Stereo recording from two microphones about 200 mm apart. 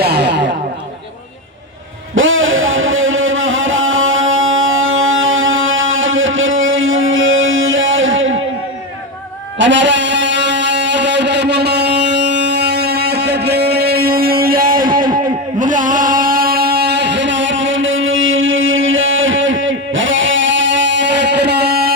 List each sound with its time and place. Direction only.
0.0 s music: 55° right (ahead or behind)
2.1 s music: 80° right
9.6 s music: 65° right (ahead or behind)